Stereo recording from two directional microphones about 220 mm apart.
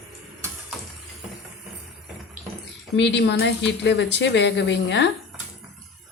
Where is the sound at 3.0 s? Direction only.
50° left (ahead or behind).